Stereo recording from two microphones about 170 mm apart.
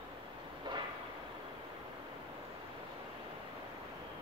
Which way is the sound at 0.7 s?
25° right (ahead or behind).